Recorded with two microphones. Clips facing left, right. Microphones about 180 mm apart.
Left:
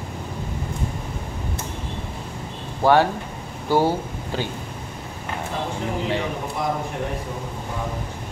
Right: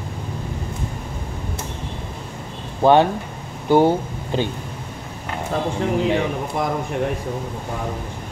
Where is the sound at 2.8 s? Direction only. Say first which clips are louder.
Right 3 dB; 20° right (ahead or behind).